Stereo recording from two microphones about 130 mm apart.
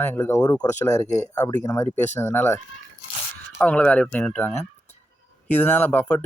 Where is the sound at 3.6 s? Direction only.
10° left (ahead or behind).